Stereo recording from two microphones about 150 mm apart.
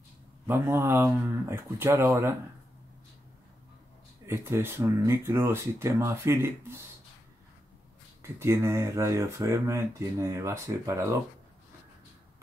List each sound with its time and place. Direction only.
0.5 s speech: 15° right (ahead or behind)
4.3 s speech: 15° right (ahead or behind)
8.2 s speech: 15° right (ahead or behind)